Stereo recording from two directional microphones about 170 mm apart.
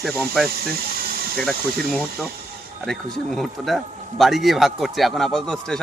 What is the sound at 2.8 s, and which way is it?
A man's voice, 5° left (ahead or behind).